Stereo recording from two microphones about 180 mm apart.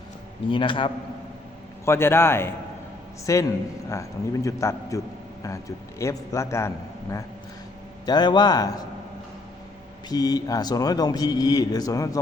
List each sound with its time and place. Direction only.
0.5 s a man's voice: 30° left (ahead or behind)
1.8 s a man's voice: 15° left (ahead or behind)
10.1 s a man's voice: 20° left (ahead or behind)